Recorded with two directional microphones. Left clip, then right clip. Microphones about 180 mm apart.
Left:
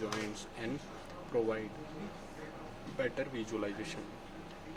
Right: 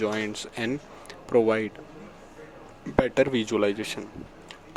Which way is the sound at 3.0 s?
60° right (ahead or behind).